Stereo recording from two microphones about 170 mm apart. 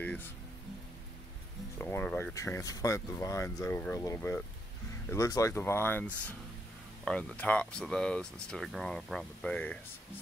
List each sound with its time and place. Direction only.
0.0 s speech: 10° left (ahead or behind)
1.8 s speech: 15° left (ahead or behind)